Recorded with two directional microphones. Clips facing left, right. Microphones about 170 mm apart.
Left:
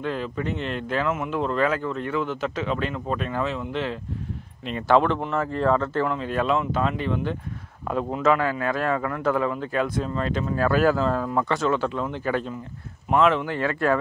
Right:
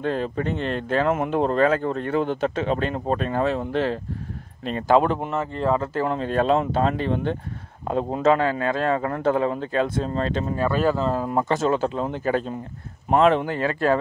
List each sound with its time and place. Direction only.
0.0 s speech: 40° right (ahead or behind)
5.4 s speech: centre (ahead or behind)
5.8 s a man's voice: 35° right (ahead or behind)
10.6 s speech: centre (ahead or behind)
11.1 s speech: 35° right (ahead or behind)
13.6 s a man's voice: 25° right (ahead or behind)